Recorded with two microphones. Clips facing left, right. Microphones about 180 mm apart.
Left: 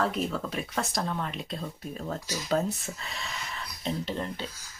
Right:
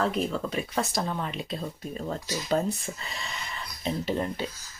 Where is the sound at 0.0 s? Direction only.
Centre (ahead or behind).